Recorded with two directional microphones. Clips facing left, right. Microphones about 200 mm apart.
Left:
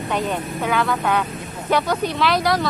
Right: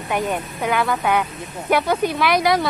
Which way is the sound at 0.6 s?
5° right (ahead or behind).